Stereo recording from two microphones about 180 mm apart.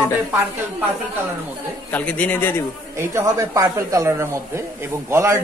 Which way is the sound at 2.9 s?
15° right (ahead or behind).